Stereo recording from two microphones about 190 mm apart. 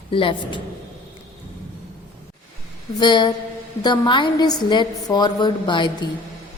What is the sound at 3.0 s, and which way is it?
A woman's voice, 25° left (ahead or behind).